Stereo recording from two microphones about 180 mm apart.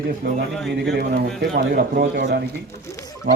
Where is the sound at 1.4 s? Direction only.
65° right (ahead or behind).